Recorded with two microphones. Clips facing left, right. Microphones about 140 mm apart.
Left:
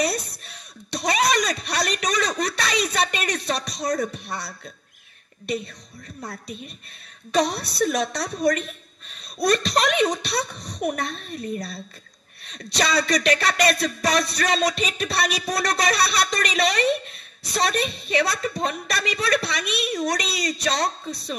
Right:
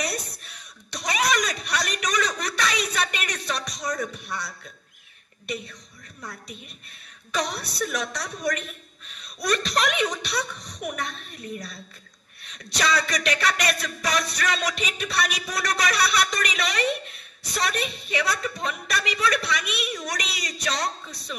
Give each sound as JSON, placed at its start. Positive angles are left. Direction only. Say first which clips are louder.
{"t": 0.0, "sound": "a sound", "louder": "left 6 dB", "side_deg": 30}
{"t": 3.9, "sound": "music", "louder": "left 5 dB", "side_deg": 35}
{"t": 7.3, "sound": "music", "louder": "left 6 dB", "side_deg": 35}